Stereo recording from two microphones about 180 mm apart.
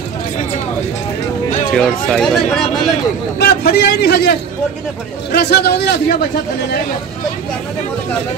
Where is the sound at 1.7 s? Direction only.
5° left (ahead or behind).